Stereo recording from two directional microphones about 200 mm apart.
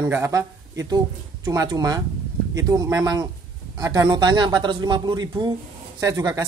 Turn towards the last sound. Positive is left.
turn(degrees=-15)  # may be behind; listen again after turning